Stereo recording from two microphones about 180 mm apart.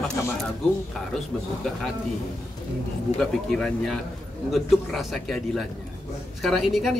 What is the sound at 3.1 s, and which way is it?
A man's voice, 5° left (ahead or behind).